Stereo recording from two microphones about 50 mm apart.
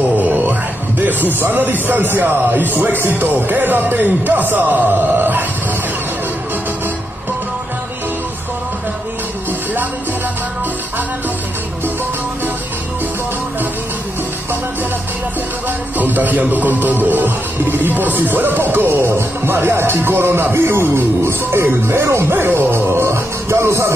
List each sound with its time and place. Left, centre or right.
0.2 s speech: right
4.8 s music: right
16.0 s speech: right
18.9 s music: right
23.6 s music: right